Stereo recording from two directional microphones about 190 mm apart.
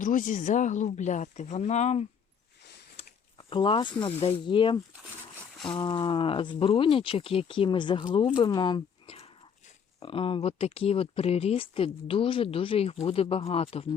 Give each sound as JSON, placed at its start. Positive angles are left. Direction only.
{"t": 0.0, "sound": "speech", "side_deg": 45}
{"t": 3.0, "sound": "speech", "side_deg": 25}
{"t": 8.4, "sound": "a sound", "side_deg": 20}
{"t": 10.0, "sound": "speech", "side_deg": 30}